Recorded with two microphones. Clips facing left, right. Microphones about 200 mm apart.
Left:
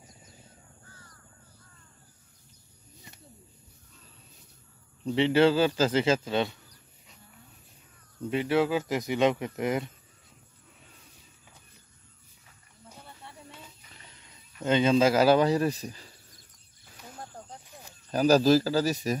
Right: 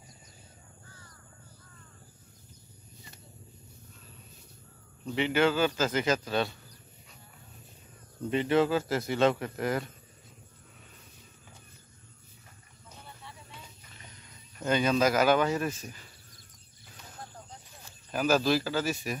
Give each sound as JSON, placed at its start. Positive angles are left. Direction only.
{"t": 5.0, "sound": "a man's voice", "side_deg": 30}
{"t": 8.3, "sound": "speech", "side_deg": 10}
{"t": 14.6, "sound": "a man's voice", "side_deg": 25}
{"t": 18.1, "sound": "a man's voice", "side_deg": 35}